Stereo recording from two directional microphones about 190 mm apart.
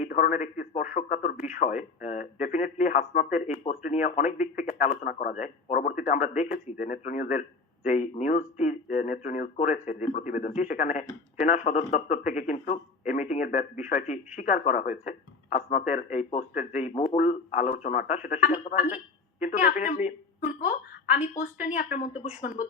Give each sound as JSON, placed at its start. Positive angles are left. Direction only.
{"t": 0.0, "sound": "speech", "side_deg": 45}